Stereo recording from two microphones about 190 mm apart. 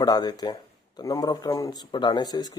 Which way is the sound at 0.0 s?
20° left (ahead or behind).